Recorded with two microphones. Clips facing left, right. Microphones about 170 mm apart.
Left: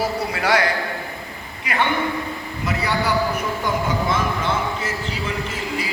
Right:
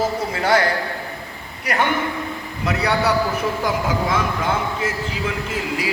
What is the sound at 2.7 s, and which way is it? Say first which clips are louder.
Speech: right 3 dB; 70° right (ahead or behind).